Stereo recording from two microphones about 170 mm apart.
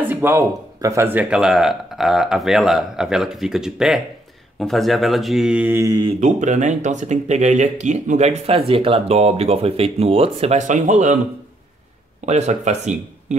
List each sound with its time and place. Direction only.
0.0 s speech: 10° right (ahead or behind)
6.2 s speech: 45° right (ahead or behind)
12.3 s speech: 40° right (ahead or behind)